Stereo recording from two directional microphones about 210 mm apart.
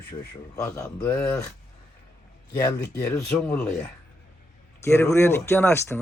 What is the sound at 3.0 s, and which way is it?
Speech, 15° left (ahead or behind).